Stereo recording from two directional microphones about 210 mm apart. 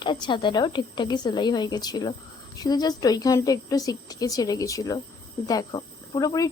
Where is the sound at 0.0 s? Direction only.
20° left (ahead or behind).